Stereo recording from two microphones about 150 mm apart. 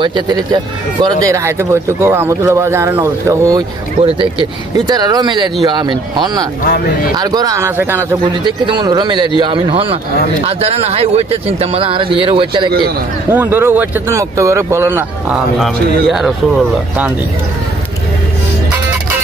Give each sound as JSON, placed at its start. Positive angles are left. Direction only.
{"t": 0.0, "sound": "speech", "side_deg": -30}
{"t": 4.0, "sound": "speech", "side_deg": -35}
{"t": 6.6, "sound": "speech", "side_deg": 75}
{"t": 7.2, "sound": "speech", "side_deg": -25}
{"t": 8.3, "sound": "speech", "side_deg": -30}
{"t": 13.3, "sound": "speech", "side_deg": -15}
{"t": 15.6, "sound": "speech", "side_deg": 0}